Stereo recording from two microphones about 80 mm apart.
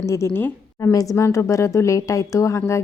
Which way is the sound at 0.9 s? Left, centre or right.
Left.